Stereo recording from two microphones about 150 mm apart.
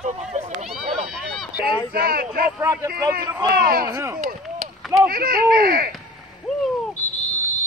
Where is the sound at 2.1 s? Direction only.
65° right (ahead or behind).